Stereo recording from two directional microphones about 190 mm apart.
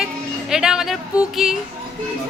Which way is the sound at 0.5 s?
5° right (ahead or behind).